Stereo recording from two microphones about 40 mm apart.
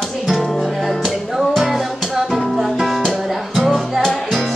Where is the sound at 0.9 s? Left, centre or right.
Centre.